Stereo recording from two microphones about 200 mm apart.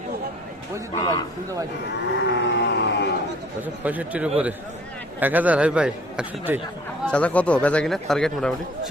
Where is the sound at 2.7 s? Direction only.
60° left (ahead or behind).